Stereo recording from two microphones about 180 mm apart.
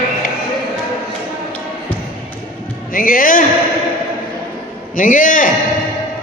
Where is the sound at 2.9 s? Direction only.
50° left (ahead or behind).